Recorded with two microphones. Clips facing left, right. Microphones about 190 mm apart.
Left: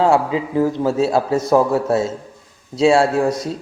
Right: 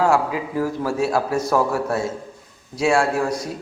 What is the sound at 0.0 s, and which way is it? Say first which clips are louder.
A man's voice: left 3 dB; 25° left (ahead or behind).